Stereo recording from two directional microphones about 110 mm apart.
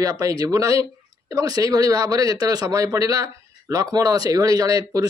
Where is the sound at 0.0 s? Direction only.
35° right (ahead or behind).